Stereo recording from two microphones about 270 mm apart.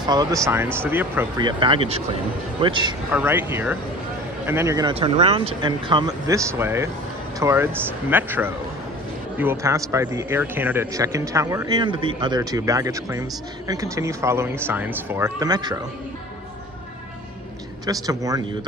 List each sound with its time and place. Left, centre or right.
0.0 s speech: centre
17.8 s speech: centre